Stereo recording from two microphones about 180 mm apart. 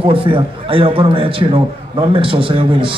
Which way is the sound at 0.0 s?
30° right (ahead or behind).